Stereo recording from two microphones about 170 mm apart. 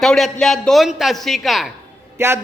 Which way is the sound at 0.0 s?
5° left (ahead or behind).